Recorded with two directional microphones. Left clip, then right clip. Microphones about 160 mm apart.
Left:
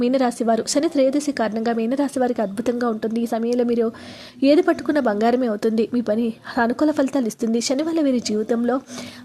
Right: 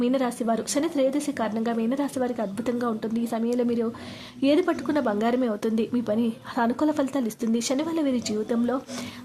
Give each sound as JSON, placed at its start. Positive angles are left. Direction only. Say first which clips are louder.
{"t": 0.0, "sound": "a woman's voice", "louder": "left 6 dB", "side_deg": 30}